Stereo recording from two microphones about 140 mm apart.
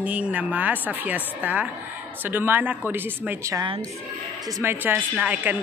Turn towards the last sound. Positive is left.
turn(degrees=-10)  # may be behind; listen again after turning